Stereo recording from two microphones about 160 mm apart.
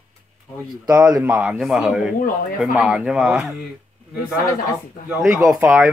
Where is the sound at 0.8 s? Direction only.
20° right (ahead or behind).